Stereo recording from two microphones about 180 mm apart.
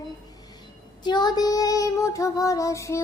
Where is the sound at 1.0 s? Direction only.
25° left (ahead or behind).